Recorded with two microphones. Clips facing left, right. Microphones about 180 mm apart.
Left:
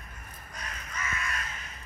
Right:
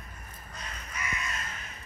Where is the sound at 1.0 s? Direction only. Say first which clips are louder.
Left 1 dB; 15° right (ahead or behind).